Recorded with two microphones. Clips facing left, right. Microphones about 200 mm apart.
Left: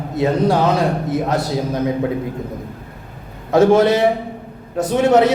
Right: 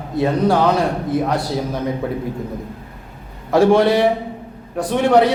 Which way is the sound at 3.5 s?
20° left (ahead or behind).